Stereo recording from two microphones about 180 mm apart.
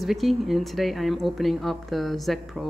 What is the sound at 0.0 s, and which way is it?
A woman's voice, centre (ahead or behind).